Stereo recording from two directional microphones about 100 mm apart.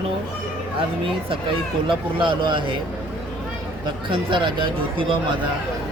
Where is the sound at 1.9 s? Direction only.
55° right (ahead or behind).